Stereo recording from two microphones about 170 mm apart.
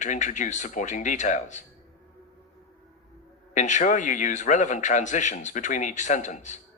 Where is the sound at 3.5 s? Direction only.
45° left (ahead or behind).